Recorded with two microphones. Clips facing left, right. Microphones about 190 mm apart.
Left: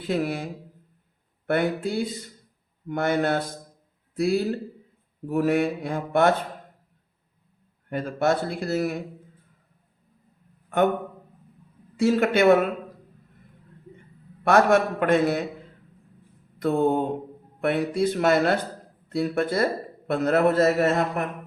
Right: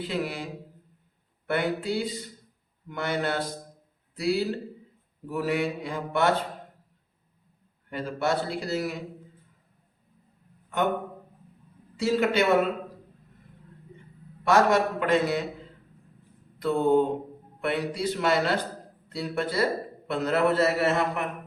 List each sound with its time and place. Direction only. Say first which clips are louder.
0.1 s a man's voice: left 7 dB; 50° left (ahead or behind)
1.5 s a man's voice: left 3 dB; 50° left (ahead or behind)
7.9 s a man's voice: left 4 dB; 50° left (ahead or behind)
11.9 s a man's voice: left 3 dB; 50° left (ahead or behind)
14.4 s a man's voice: left 3 dB; 55° left (ahead or behind)
16.6 s mantra: left 1 dB; 50° left (ahead or behind)
17.6 s a man's voice: left 5 dB; 50° left (ahead or behind)